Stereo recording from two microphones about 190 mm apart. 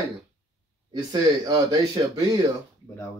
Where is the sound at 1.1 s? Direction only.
20° right (ahead or behind).